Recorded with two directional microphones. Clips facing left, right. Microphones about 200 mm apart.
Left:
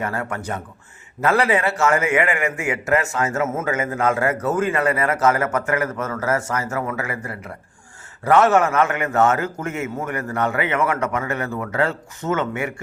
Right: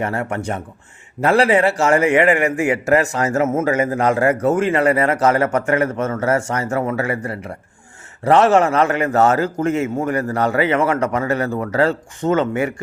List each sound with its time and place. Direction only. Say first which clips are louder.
0.0 s a man's voice: right 4 dB; 25° right (ahead or behind)